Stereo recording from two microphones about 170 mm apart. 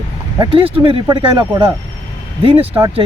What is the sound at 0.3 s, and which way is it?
Speech, 30° right (ahead or behind).